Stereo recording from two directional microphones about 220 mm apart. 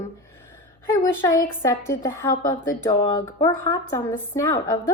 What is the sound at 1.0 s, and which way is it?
A woman's voice, 10° left (ahead or behind).